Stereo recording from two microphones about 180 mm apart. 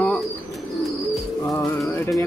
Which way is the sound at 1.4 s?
15° left (ahead or behind).